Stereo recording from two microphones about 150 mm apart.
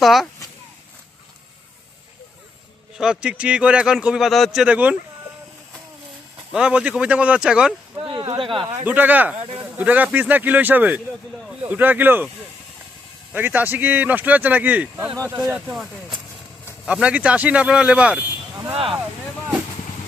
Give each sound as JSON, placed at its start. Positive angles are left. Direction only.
{"t": 0.0, "sound": "speech", "side_deg": 0}
{"t": 3.0, "sound": "a man's voice", "side_deg": -5}
{"t": 6.5, "sound": "a man's voice", "side_deg": -5}
{"t": 8.0, "sound": "speech", "side_deg": -35}
{"t": 8.6, "sound": "a man's voice", "side_deg": -10}
{"t": 13.3, "sound": "a man's voice", "side_deg": -10}
{"t": 15.1, "sound": "speech", "side_deg": -20}
{"t": 15.7, "sound": "a man's voice", "side_deg": 0}
{"t": 18.7, "sound": "speech", "side_deg": -40}